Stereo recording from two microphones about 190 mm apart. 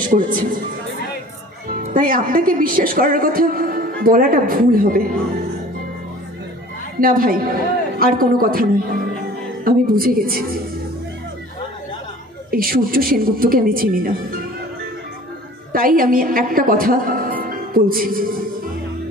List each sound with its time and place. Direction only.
0.0 s a woman's voice: 45° right (ahead or behind)
2.0 s a woman's voice: 45° right (ahead or behind)
7.0 s a woman's voice: 50° right (ahead or behind)
12.4 s a woman's voice: 50° right (ahead or behind)
15.7 s a woman's voice: 50° right (ahead or behind)